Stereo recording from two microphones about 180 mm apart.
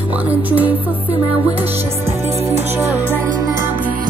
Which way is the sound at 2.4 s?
15° right (ahead or behind).